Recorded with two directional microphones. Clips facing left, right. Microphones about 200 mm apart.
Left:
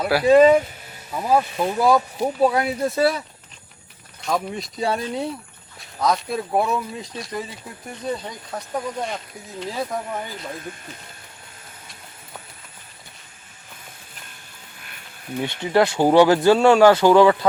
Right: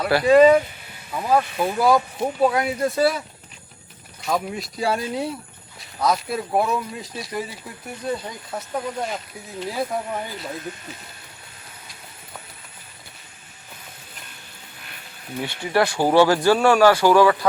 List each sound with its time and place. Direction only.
0.0 s speech: 5° left (ahead or behind)
4.2 s speech: centre (ahead or behind)
15.4 s speech: 20° left (ahead or behind)